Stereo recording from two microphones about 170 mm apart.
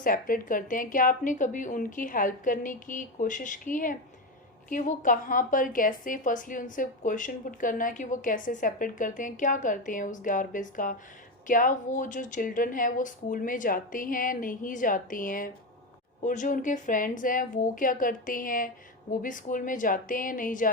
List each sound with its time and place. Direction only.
0.0 s a woman's voice: 55° left (ahead or behind)